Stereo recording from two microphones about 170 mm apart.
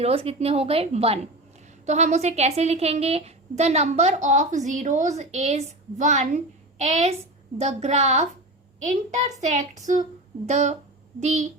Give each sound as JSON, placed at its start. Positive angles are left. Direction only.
{"t": 0.0, "sound": "a woman's voice", "side_deg": -35}
{"t": 9.8, "sound": "a sound", "side_deg": -45}
{"t": 11.2, "sound": "a woman's voice", "side_deg": -40}